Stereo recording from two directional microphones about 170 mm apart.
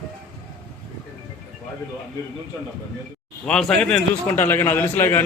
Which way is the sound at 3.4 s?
5° left (ahead or behind).